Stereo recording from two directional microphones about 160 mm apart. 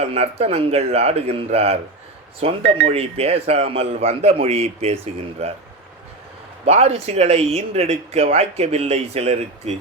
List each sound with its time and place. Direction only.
0.0 s speech: 40° right (ahead or behind)
6.7 s speech: 40° right (ahead or behind)